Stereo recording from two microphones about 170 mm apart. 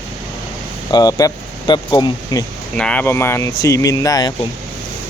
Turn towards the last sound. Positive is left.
turn(degrees=20)  # may be behind; listen again after turning